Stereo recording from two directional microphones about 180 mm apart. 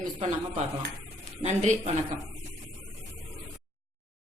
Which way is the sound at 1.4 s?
35° right (ahead or behind).